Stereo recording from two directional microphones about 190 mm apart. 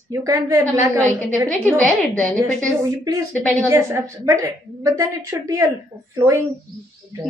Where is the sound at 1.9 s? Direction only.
5° left (ahead or behind).